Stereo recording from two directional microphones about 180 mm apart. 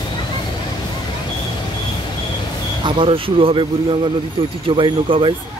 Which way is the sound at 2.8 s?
30° right (ahead or behind).